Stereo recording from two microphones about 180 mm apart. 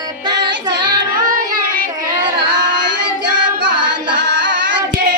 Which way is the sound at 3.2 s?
70° right (ahead or behind).